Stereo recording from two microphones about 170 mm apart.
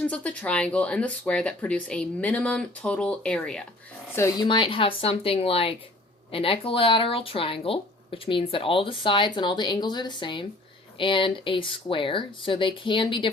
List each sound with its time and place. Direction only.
0.0 s speech: 10° left (ahead or behind)
4.1 s speech: 15° left (ahead or behind)
4.4 s speech: 30° left (ahead or behind)